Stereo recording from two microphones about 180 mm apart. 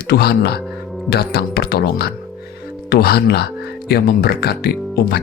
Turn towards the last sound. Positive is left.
turn(degrees=60)  # may be behind; listen again after turning